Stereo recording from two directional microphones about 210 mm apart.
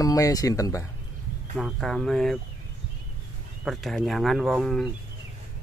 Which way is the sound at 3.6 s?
Centre (ahead or behind).